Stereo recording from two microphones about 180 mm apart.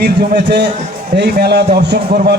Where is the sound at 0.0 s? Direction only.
65° right (ahead or behind).